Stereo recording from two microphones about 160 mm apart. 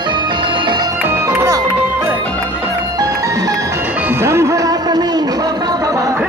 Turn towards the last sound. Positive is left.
turn(degrees=-20)  # may be behind; listen again after turning